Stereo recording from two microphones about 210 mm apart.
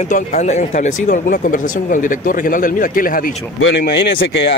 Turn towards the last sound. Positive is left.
turn(degrees=55)  # may be behind; listen again after turning